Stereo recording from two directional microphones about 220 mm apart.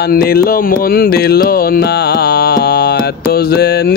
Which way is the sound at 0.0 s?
45° left (ahead or behind).